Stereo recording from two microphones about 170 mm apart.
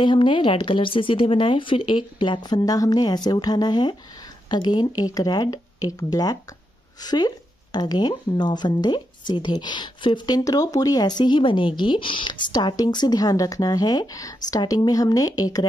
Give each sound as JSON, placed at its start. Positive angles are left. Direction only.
{"t": 0.0, "sound": "a woman's voice", "side_deg": 30}